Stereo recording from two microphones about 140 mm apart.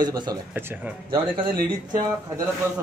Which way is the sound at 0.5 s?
15° right (ahead or behind).